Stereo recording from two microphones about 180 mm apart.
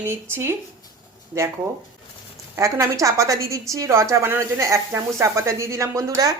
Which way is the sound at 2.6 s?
15° right (ahead or behind).